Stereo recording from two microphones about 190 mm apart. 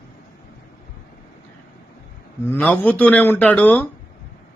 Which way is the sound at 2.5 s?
10° left (ahead or behind).